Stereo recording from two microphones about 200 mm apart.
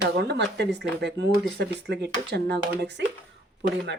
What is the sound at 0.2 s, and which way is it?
Speech, 55° right (ahead or behind).